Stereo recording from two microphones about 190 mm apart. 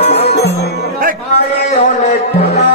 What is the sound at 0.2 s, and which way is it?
Music, 60° left (ahead or behind).